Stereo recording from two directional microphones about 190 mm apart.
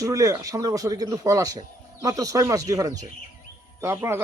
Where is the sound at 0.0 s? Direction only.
15° right (ahead or behind).